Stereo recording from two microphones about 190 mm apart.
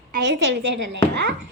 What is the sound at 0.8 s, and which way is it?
Speech, 65° right (ahead or behind).